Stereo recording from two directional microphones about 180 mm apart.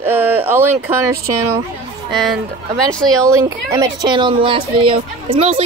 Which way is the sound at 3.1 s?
20° right (ahead or behind).